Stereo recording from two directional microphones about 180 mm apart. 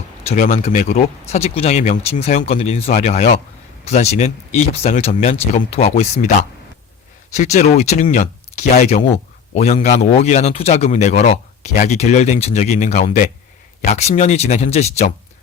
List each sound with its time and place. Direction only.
0.3 s speech: 40° left (ahead or behind)
7.3 s speech: 40° left (ahead or behind)